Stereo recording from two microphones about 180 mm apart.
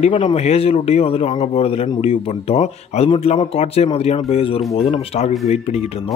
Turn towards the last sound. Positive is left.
turn(degrees=35)  # may be behind; listen again after turning